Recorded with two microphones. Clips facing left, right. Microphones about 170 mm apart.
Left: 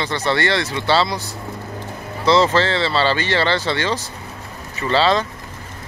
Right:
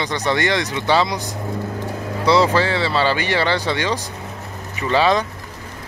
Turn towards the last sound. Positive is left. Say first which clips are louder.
# even
turn(degrees=-15)  # may be behind; listen again after turning